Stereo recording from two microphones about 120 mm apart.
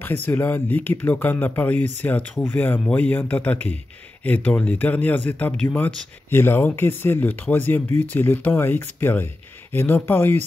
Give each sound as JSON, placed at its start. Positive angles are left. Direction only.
{"t": 0.0, "sound": "speech", "side_deg": 15}